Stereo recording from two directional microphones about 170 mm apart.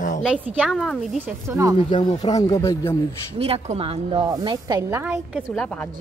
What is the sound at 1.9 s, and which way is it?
Speech, 25° left (ahead or behind).